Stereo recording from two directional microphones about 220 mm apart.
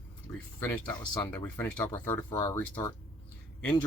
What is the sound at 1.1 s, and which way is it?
Speech, 20° left (ahead or behind).